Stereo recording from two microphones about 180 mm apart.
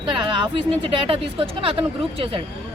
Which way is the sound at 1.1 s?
30° right (ahead or behind).